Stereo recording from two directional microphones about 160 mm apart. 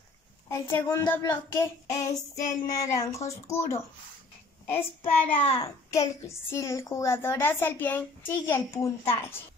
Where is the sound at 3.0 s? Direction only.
20° left (ahead or behind).